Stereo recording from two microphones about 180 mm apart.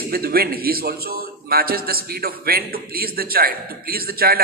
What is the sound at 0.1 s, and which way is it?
A man's voice, 55° right (ahead or behind).